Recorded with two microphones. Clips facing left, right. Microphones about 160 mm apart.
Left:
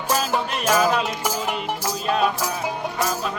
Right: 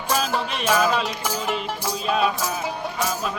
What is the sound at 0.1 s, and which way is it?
Music, 5° left (ahead or behind).